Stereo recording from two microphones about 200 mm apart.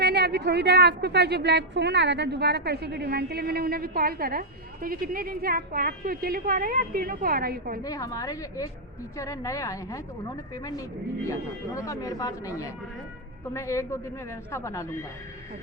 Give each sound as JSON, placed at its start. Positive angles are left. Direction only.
{"t": 0.0, "sound": "a woman's voice", "side_deg": -55}
{"t": 7.9, "sound": "a man's voice", "side_deg": 15}